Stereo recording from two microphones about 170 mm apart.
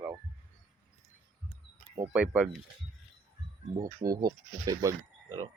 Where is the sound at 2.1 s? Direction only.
5° right (ahead or behind).